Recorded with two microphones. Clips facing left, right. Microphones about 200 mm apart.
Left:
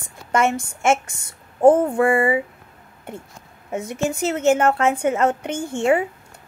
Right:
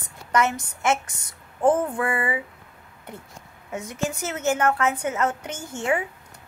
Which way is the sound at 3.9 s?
25° left (ahead or behind).